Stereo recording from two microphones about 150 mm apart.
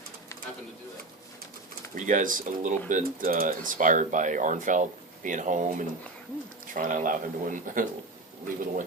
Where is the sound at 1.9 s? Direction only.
60° right (ahead or behind).